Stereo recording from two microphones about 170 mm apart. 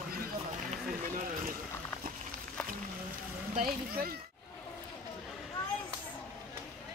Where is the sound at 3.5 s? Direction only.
60° right (ahead or behind).